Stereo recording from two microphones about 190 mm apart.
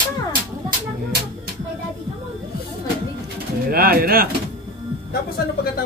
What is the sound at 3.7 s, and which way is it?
Speech, 50° right (ahead or behind).